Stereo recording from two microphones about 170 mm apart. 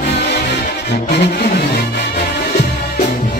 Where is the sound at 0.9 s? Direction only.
70° left (ahead or behind).